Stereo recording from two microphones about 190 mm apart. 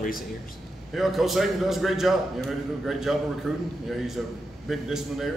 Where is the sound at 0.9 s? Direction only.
Centre (ahead or behind).